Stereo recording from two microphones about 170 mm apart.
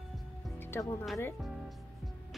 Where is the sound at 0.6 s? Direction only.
15° left (ahead or behind).